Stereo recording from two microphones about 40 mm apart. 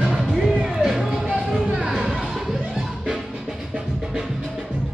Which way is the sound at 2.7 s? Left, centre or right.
Centre.